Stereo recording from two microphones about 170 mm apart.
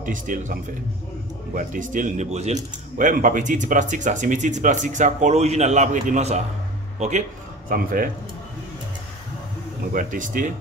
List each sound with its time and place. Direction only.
0.0 s speech: 50° right (ahead or behind)
7.7 s speech: 55° right (ahead or behind)
9.9 s speech: 50° right (ahead or behind)